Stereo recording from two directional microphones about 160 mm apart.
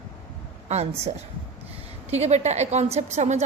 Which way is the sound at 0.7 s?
45° right (ahead or behind).